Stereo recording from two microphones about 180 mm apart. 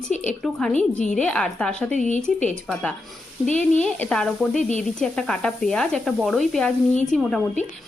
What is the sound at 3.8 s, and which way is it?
Speech, 5° left (ahead or behind).